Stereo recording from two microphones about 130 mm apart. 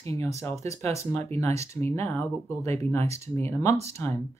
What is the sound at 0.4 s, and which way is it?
Speech, 20° left (ahead or behind).